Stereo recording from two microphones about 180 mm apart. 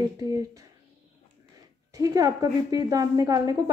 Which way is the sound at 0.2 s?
20° right (ahead or behind).